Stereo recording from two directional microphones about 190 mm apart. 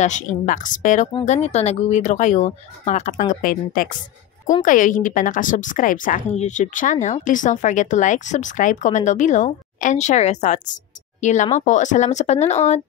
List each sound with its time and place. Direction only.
0.0 s a woman's voice: 40° left (ahead or behind)